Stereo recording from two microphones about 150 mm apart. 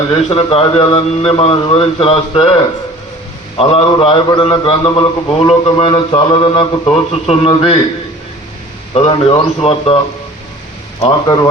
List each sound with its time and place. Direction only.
0.1 s a man's voice: 35° left (ahead or behind)
8.9 s a man's voice: 35° left (ahead or behind)